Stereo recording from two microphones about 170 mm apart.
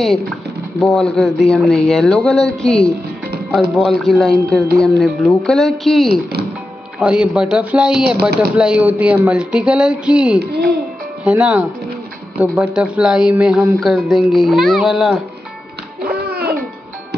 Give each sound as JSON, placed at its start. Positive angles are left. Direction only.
{"t": 0.7, "sound": "speech", "side_deg": 0}
{"t": 10.4, "sound": "a child's voice", "side_deg": -70}
{"t": 11.2, "sound": "speech", "side_deg": -5}
{"t": 16.0, "sound": "music", "side_deg": -65}